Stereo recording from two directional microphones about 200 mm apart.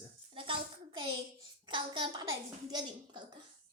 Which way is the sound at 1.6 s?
25° right (ahead or behind).